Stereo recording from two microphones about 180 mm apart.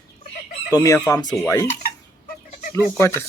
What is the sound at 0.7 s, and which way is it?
Chicken, 20° left (ahead or behind).